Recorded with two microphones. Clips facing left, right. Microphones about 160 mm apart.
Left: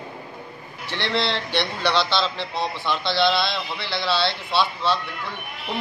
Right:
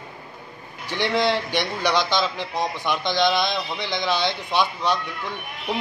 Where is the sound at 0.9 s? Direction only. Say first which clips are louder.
Right 3 dB; 10° right (ahead or behind).